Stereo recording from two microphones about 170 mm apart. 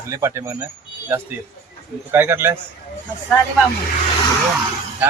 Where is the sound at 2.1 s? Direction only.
15° right (ahead or behind).